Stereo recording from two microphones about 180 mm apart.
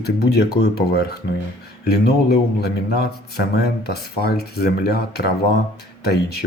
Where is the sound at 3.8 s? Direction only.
65° left (ahead or behind).